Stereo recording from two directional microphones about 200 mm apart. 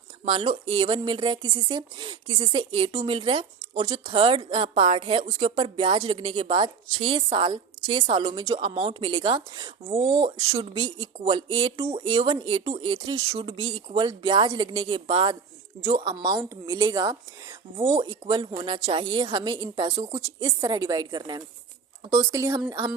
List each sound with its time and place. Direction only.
0.3 s a woman's voice: 30° right (ahead or behind)
10.3 s a woman's voice: 20° right (ahead or behind)